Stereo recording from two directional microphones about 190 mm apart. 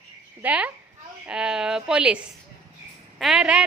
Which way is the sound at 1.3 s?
5° right (ahead or behind).